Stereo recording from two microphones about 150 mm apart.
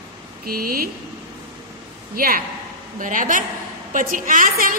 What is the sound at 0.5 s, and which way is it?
Speech, 80° right.